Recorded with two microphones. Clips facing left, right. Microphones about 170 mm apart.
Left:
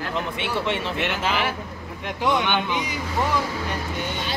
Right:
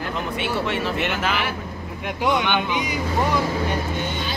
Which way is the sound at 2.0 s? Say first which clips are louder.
Right 1 dB; 5° right (ahead or behind).